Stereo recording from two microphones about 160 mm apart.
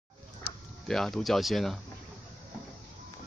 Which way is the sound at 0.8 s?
5° left (ahead or behind).